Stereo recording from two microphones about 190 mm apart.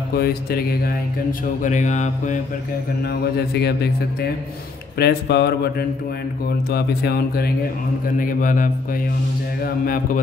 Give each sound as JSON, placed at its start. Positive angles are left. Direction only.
{"t": 0.1, "sound": "speech", "side_deg": 55}
{"t": 1.6, "sound": "speech", "side_deg": 40}
{"t": 3.0, "sound": "a man's voice", "side_deg": 55}